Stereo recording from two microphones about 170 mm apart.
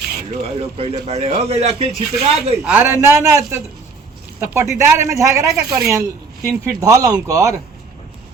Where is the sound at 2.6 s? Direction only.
10° right (ahead or behind).